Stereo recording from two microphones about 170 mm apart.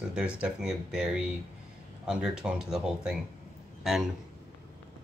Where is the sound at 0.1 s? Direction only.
5° right (ahead or behind).